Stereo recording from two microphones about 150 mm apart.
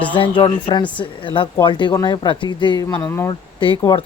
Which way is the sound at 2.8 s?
15° left (ahead or behind).